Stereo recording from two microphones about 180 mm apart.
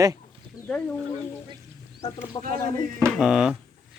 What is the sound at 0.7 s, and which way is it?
Speech, 5° left (ahead or behind).